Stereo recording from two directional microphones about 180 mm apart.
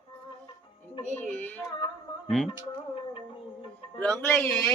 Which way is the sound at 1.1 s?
5° left (ahead or behind).